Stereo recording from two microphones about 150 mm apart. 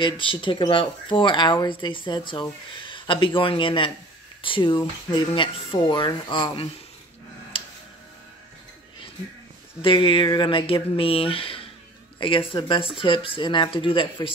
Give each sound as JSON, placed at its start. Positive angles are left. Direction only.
{"t": 0.0, "sound": "speech", "side_deg": 35}
{"t": 7.5, "sound": "music", "side_deg": 35}
{"t": 9.8, "sound": "speech", "side_deg": 35}